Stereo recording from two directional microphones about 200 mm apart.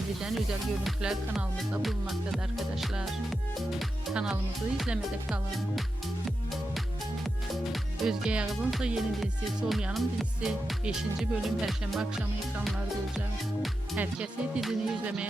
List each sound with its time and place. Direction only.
0.2 s speech: centre (ahead or behind)
7.7 s speech: 5° right (ahead or behind)